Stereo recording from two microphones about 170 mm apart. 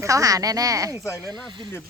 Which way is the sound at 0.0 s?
20° right (ahead or behind).